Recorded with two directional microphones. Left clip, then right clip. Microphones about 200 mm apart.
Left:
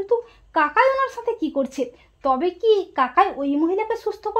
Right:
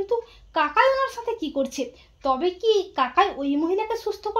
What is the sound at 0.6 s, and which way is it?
Speech, 30° left (ahead or behind).